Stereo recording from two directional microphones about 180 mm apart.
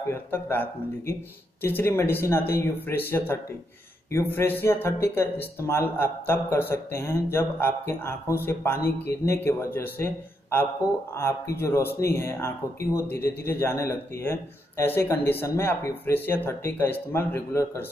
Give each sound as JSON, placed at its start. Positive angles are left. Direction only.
{"t": 0.1, "sound": "speech", "side_deg": 10}
{"t": 8.7, "sound": "speech", "side_deg": 55}
{"t": 9.2, "sound": "speech", "side_deg": 15}